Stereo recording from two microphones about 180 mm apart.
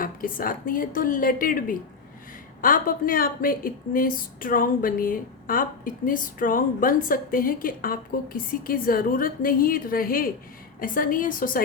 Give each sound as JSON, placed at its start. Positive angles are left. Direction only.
{"t": 0.0, "sound": "a woman's voice", "side_deg": 50}